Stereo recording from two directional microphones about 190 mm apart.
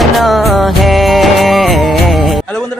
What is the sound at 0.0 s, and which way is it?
Music, centre (ahead or behind).